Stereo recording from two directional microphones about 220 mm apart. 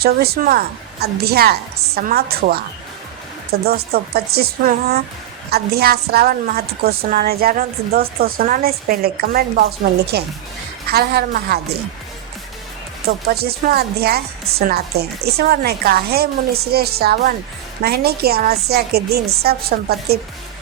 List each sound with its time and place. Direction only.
0.0 s a woman's voice: 45° right (ahead or behind)
13.2 s a woman's voice: 45° right (ahead or behind)